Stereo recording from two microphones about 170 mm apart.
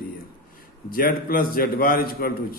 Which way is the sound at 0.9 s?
60° left (ahead or behind).